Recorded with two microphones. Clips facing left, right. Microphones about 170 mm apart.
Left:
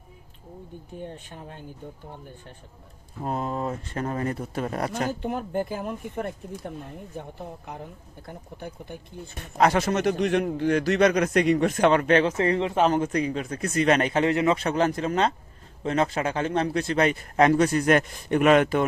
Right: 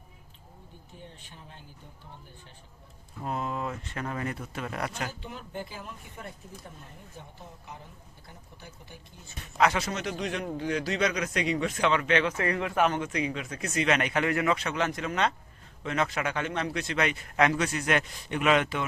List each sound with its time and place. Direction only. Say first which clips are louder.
0.9 s speech: left 11 dB; 50° left (ahead or behind)
3.2 s a man's voice: left 4 dB; 40° left (ahead or behind); by 9.5 s 55° left (ahead or behind)
9.6 s a man's voice: left 5 dB; 45° left (ahead or behind)